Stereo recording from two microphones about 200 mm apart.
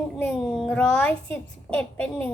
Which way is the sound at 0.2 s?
5° left (ahead or behind).